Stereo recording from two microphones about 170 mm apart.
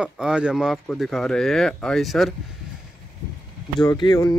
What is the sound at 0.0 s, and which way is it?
Speech, 5° right (ahead or behind).